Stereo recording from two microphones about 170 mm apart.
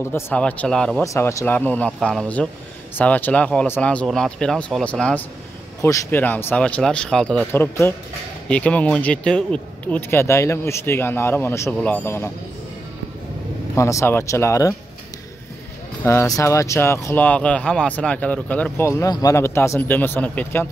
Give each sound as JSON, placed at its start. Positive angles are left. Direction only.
{"t": 0.1, "sound": "speech", "side_deg": 10}
{"t": 1.0, "sound": "speech", "side_deg": 20}
{"t": 5.8, "sound": "speech", "side_deg": 20}
{"t": 13.7, "sound": "speech", "side_deg": 15}
{"t": 16.0, "sound": "speech", "side_deg": 15}